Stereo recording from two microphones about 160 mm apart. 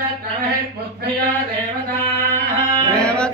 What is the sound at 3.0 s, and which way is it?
Music, 5° left (ahead or behind).